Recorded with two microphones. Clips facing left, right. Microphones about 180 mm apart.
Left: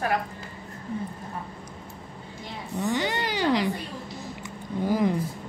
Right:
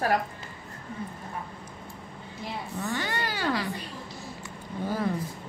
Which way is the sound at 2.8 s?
20° left (ahead or behind).